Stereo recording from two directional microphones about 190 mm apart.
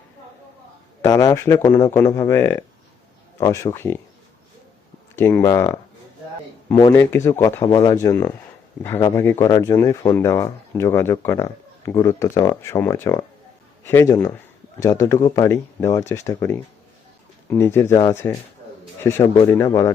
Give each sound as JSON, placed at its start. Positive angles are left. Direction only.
{"t": 1.0, "sound": "speech", "side_deg": 20}
{"t": 5.1, "sound": "speech", "side_deg": 10}
{"t": 6.9, "sound": "speech", "side_deg": 10}